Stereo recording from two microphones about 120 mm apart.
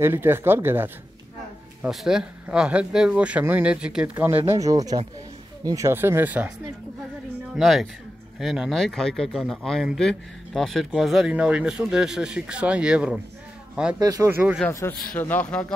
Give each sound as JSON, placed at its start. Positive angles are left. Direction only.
{"t": 0.0, "sound": "speech", "side_deg": -20}
{"t": 1.8, "sound": "speech", "side_deg": -5}
{"t": 4.6, "sound": "speech", "side_deg": -30}
{"t": 7.5, "sound": "speech", "side_deg": 0}
{"t": 13.9, "sound": "speech", "side_deg": -30}
{"t": 14.3, "sound": "speech", "side_deg": -15}
{"t": 14.7, "sound": "a man's voice", "side_deg": 20}